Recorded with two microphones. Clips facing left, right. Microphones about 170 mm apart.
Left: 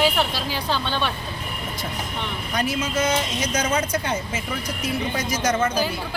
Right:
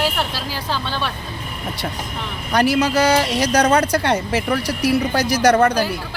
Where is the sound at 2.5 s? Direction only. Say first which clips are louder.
Right 9 dB; 70° right (ahead or behind).